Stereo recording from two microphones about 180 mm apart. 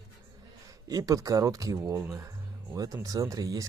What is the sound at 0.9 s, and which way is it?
Speech, 20° right (ahead or behind).